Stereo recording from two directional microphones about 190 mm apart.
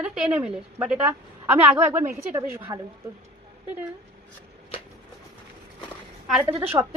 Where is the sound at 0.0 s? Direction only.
5° right (ahead or behind).